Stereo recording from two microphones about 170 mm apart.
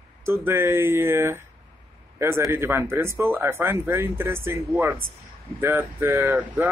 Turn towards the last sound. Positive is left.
turn(degrees=-10)  # may be behind; listen again after turning